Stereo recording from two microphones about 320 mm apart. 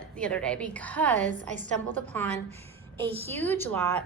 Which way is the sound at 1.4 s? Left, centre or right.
Right.